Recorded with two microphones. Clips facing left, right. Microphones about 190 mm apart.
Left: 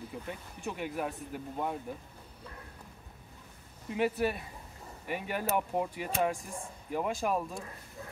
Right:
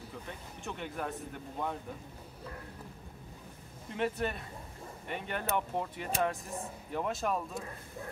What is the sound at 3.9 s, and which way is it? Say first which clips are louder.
Speech: left 3 dB; 5° left (ahead or behind).